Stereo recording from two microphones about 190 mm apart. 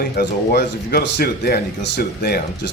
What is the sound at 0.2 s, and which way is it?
Speech, 55° left (ahead or behind).